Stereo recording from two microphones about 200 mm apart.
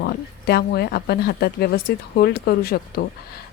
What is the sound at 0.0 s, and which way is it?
Speech, 55° left (ahead or behind).